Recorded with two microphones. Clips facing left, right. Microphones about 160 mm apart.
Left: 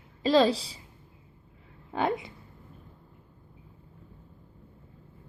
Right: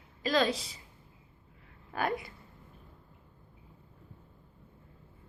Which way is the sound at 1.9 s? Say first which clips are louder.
Left 4 dB; 25° left (ahead or behind).